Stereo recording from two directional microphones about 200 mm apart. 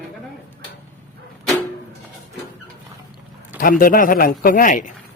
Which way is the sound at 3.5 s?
45° left (ahead or behind).